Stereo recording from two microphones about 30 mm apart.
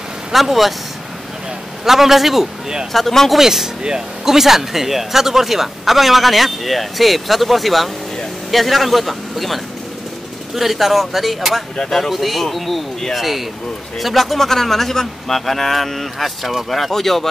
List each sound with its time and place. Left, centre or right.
0.3 s speech: centre
1.9 s speech: centre
2.9 s speech: centre
3.3 s speech: centre
16.9 s speech: centre